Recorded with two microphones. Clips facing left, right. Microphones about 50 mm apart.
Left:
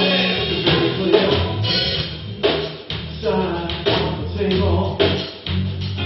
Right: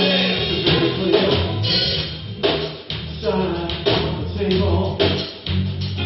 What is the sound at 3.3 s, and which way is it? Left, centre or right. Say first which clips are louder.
Music: even; centre.